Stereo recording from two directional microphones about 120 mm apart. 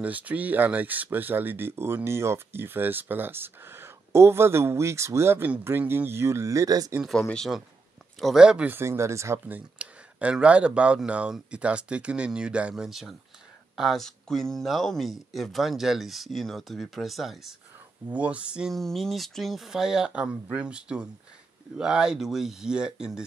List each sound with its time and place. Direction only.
0.0 s speech: 10° right (ahead or behind); by 7.0 s 30° right (ahead or behind)
7.1 s speech: 5° left (ahead or behind); by 9.6 s 25° right (ahead or behind)
9.8 s speech: 10° right (ahead or behind)